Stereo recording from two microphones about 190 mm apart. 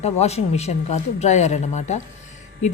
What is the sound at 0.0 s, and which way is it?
A woman's voice, 35° left (ahead or behind).